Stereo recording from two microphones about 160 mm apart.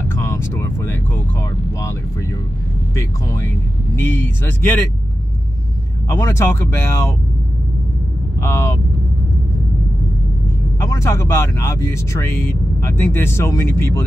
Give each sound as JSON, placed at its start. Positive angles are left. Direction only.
{"t": 0.1, "sound": "speech", "side_deg": 15}
{"t": 3.9, "sound": "speech", "side_deg": 15}
{"t": 6.0, "sound": "speech", "side_deg": 20}
{"t": 8.4, "sound": "speech", "side_deg": 15}
{"t": 10.8, "sound": "speech", "side_deg": 20}